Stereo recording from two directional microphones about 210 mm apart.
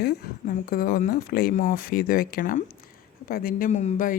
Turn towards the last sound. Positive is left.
turn(degrees=40)  # may be behind; listen again after turning